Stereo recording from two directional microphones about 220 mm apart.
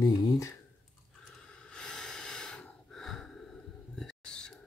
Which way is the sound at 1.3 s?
5° left (ahead or behind).